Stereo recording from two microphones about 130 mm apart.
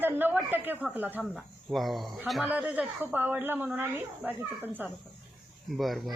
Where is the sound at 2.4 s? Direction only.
10° right (ahead or behind).